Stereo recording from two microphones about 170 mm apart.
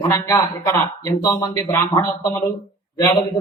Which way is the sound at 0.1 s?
20° left (ahead or behind).